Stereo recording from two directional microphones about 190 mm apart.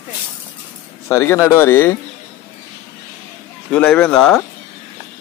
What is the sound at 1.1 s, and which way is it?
Speech, 15° left (ahead or behind).